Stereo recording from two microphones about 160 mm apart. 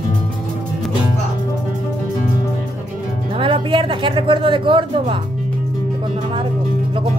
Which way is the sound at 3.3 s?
35° right (ahead or behind).